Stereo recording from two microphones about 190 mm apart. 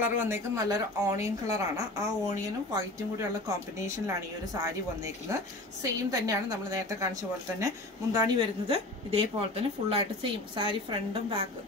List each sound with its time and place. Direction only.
0.0 s a woman's voice: 15° right (ahead or behind)